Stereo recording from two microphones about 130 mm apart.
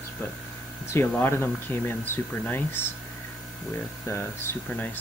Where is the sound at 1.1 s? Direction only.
15° left (ahead or behind).